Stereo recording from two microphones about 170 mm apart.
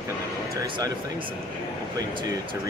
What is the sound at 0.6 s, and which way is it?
Speech, 20° right (ahead or behind).